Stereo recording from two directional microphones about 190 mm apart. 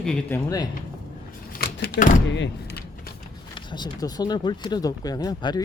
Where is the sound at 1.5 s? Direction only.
55° left (ahead or behind).